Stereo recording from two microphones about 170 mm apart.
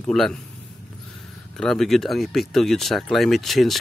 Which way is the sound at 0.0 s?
5° left (ahead or behind).